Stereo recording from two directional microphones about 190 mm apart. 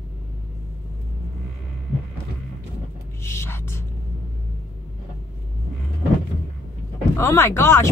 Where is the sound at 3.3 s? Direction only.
15° left (ahead or behind).